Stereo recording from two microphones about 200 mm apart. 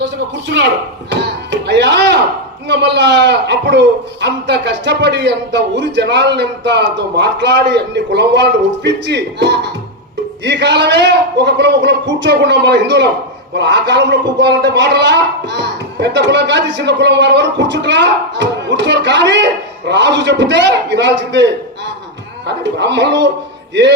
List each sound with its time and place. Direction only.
0.0 s speech: 60° right (ahead or behind)
1.1 s music: 60° right (ahead or behind)
2.6 s a man's voice: 60° right (ahead or behind)
22.4 s a man's voice: 60° right (ahead or behind)